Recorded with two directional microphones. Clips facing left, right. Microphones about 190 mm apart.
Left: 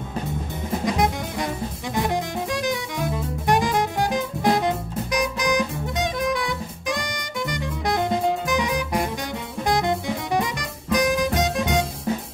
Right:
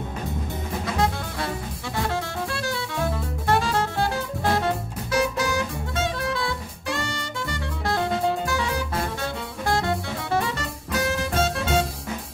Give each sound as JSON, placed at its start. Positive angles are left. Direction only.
{"t": 0.8, "sound": "jazz", "side_deg": 15}
{"t": 2.0, "sound": "music", "side_deg": 15}